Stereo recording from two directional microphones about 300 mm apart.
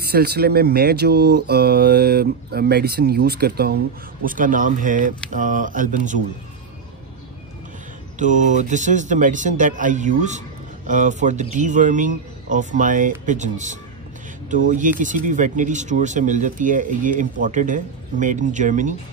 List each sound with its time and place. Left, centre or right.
0.0 s speech: right
8.2 s speech: right